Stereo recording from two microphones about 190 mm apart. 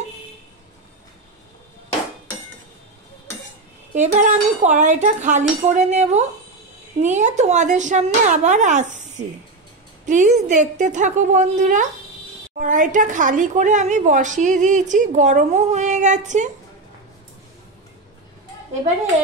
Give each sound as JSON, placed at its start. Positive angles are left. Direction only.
{"t": 3.9, "sound": "a woman's voice", "side_deg": -40}
{"t": 10.0, "sound": "a woman's voice", "side_deg": -40}